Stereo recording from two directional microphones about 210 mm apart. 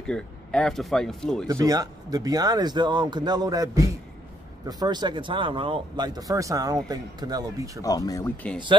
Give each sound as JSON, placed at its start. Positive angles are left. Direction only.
{"t": 0.0, "sound": "speech", "side_deg": 5}
{"t": 1.5, "sound": "speech", "side_deg": -15}
{"t": 7.8, "sound": "speech", "side_deg": 15}